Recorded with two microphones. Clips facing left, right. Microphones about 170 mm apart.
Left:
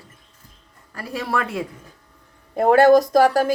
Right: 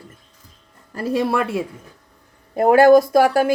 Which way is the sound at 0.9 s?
20° right (ahead or behind).